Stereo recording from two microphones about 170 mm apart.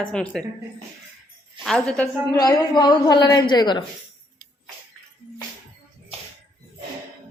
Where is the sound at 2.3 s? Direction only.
20° left (ahead or behind).